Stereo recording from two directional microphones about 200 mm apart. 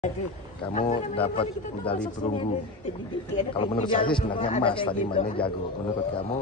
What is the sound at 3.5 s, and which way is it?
Speech, 25° left (ahead or behind).